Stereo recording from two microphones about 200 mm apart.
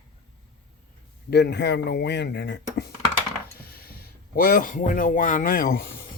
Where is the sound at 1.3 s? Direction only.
55° left (ahead or behind).